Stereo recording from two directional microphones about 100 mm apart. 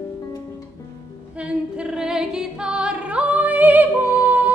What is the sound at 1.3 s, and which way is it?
Female singing, 10° right (ahead or behind).